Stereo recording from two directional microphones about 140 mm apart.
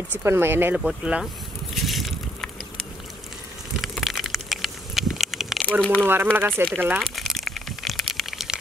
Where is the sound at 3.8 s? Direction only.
Centre (ahead or behind).